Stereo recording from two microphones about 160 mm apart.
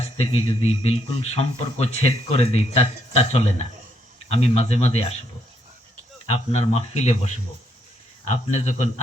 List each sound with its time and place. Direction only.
0.0 s speech: 40° left (ahead or behind)
6.2 s speech: 40° left (ahead or behind)